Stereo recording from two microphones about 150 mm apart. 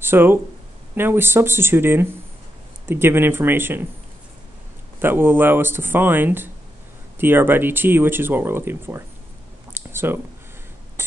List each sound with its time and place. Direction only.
0.0 s speech: 15° right (ahead or behind)
5.0 s speech: 15° right (ahead or behind)
11.0 s rodents: 15° right (ahead or behind)